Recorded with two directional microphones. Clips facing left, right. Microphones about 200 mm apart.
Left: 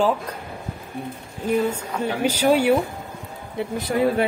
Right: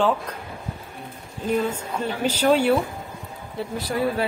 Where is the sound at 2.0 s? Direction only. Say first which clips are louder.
Left 1 dB; 10° left (ahead or behind).